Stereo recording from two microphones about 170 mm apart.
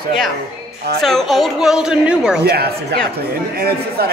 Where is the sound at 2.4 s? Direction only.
70° right (ahead or behind).